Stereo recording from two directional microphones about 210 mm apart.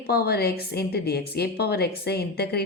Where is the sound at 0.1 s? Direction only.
50° left (ahead or behind).